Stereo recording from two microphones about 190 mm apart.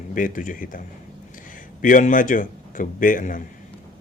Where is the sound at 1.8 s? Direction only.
45° left (ahead or behind).